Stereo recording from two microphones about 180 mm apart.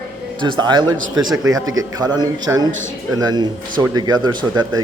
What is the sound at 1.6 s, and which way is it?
Speech, 90° right.